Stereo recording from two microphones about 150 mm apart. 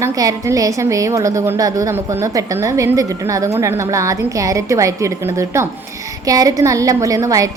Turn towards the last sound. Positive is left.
turn(degrees=-20)  # may be behind; listen again after turning